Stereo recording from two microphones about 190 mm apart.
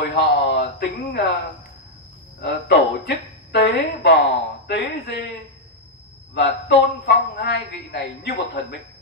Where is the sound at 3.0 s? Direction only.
60° left (ahead or behind).